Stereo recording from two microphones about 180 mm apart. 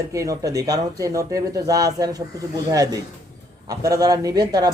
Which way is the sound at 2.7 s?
20° right (ahead or behind).